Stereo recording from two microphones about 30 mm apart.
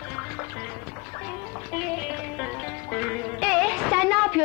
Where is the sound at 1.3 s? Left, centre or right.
Centre.